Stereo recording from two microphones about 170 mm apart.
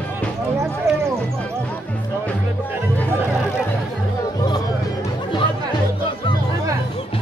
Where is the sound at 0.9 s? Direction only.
15° right (ahead or behind).